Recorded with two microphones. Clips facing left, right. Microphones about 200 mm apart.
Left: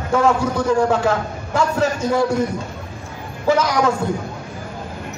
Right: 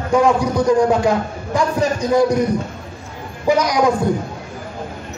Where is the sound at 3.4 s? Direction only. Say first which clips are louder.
Right 1 dB; 15° right (ahead or behind).